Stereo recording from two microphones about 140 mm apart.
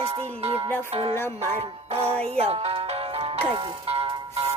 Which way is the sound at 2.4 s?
45° right (ahead or behind).